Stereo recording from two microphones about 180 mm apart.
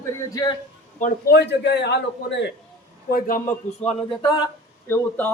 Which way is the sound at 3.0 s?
55° left (ahead or behind).